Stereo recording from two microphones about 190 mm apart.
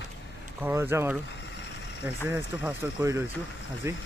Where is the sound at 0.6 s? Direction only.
10° right (ahead or behind).